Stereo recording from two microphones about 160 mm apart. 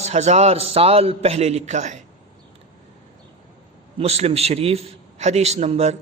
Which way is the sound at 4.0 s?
40° right (ahead or behind).